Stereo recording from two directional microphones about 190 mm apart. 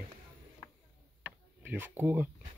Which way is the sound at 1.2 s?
10° right (ahead or behind).